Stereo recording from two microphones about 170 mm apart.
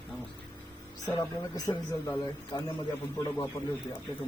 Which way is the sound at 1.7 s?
20° left (ahead or behind).